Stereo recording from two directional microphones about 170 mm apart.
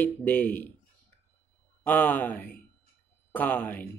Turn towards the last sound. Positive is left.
turn(degrees=10)  # may be behind; listen again after turning